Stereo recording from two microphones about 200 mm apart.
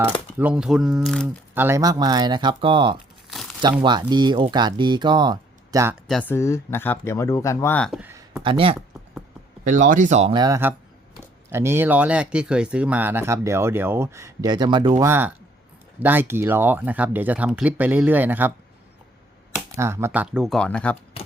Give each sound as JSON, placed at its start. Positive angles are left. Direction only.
{"t": 0.3, "sound": "speech", "side_deg": -5}
{"t": 1.5, "sound": "speech", "side_deg": -15}
{"t": 3.2, "sound": "crumpling", "side_deg": 0}
{"t": 3.6, "sound": "speech", "side_deg": -20}
{"t": 6.1, "sound": "speech", "side_deg": 5}
{"t": 7.9, "sound": "a sound", "side_deg": -10}
{"t": 8.4, "sound": "speech", "side_deg": -25}
{"t": 9.6, "sound": "speech", "side_deg": -40}
{"t": 10.3, "sound": "speech", "side_deg": -15}
{"t": 19.7, "sound": "speech", "side_deg": -15}